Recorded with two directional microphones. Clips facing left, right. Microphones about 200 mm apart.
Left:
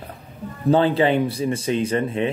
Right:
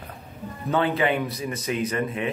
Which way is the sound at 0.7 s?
30° left (ahead or behind).